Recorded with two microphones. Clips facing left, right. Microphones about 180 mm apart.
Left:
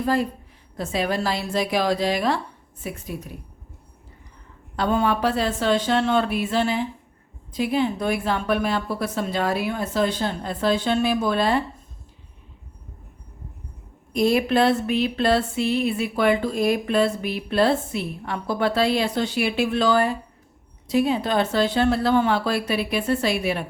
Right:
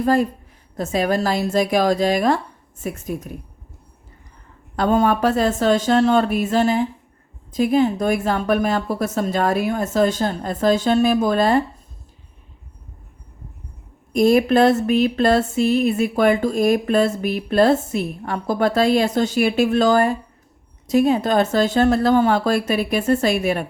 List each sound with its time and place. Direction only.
0.0 s speech: 45° right (ahead or behind)
4.8 s speech: 45° right (ahead or behind)
14.1 s speech: 45° right (ahead or behind)